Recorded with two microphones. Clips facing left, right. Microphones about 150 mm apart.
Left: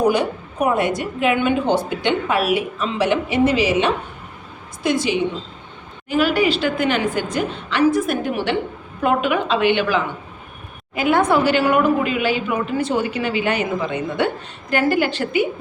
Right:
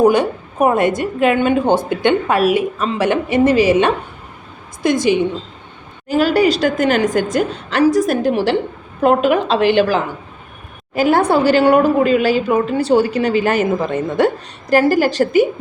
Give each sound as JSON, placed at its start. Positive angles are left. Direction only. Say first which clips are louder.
{"t": 0.0, "sound": "a woman's voice", "louder": "right 5 dB", "side_deg": -50}